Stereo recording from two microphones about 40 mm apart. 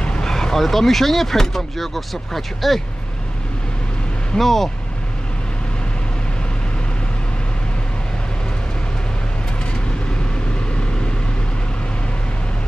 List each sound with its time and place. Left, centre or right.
0.0 s speech: centre
4.4 s speech: centre